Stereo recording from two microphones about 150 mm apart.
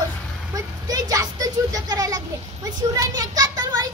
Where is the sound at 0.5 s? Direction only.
25° right (ahead or behind).